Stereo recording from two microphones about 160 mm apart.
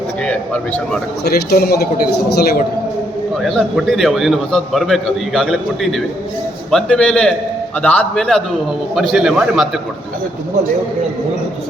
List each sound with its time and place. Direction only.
0.3 s a sound: 10° left (ahead or behind)
1.2 s a man's voice: 80° left
3.5 s a man's voice: centre (ahead or behind)